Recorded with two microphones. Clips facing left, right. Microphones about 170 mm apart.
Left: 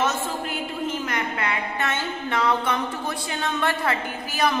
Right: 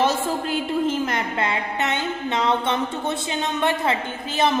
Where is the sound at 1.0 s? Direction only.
30° right (ahead or behind).